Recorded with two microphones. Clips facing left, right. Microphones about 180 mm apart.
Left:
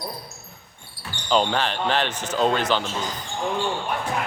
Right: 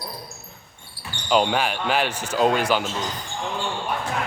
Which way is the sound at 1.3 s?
10° right (ahead or behind).